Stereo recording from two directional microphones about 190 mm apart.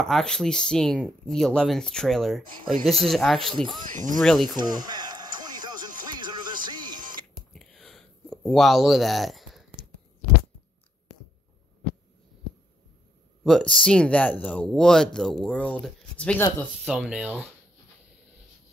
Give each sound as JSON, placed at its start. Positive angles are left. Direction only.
{"t": 0.0, "sound": "speech", "side_deg": 5}
{"t": 4.6, "sound": "music", "side_deg": -20}
{"t": 7.5, "sound": "a sound", "side_deg": 0}
{"t": 13.4, "sound": "speech", "side_deg": 5}